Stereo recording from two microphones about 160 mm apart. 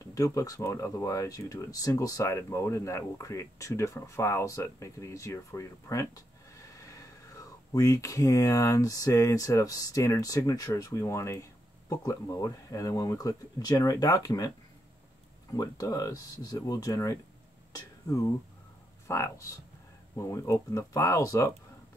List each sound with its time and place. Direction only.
0.0 s speech: 20° left (ahead or behind)
15.5 s speech: 20° left (ahead or behind)